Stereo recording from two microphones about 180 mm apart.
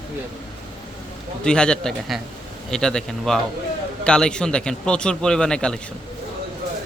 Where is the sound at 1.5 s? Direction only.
5° left (ahead or behind).